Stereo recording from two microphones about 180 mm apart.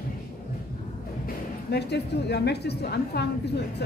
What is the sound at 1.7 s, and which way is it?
A woman's voice, 65° left (ahead or behind).